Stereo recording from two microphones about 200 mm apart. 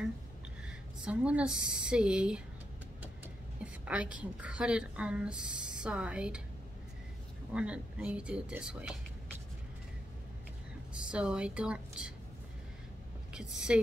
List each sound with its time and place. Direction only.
0.7 s a woman's voice: 5° right (ahead or behind)
3.8 s a woman's voice: 5° right (ahead or behind)
7.5 s a woman's voice: 5° right (ahead or behind)
11.1 s a woman's voice: 5° right (ahead or behind)
13.3 s a woman's voice: 5° right (ahead or behind)